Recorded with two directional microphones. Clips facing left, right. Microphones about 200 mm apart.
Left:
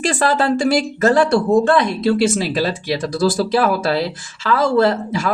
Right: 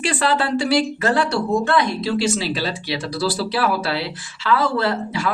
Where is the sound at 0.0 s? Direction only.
40° left (ahead or behind).